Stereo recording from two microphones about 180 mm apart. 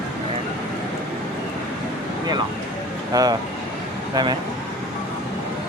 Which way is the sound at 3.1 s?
20° right (ahead or behind).